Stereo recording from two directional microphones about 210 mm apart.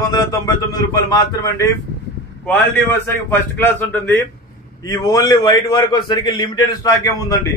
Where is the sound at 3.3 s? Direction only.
10° left (ahead or behind).